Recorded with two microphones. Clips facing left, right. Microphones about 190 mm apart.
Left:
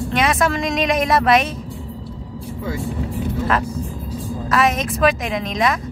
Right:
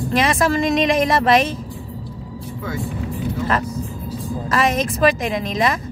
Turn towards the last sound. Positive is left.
turn(degrees=0)  # may be behind; listen again after turning